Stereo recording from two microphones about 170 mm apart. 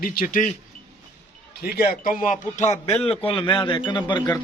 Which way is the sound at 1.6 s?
65° left (ahead or behind).